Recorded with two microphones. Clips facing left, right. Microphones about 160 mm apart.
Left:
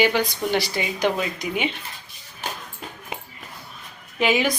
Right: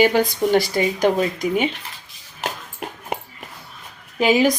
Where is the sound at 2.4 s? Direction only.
90° right.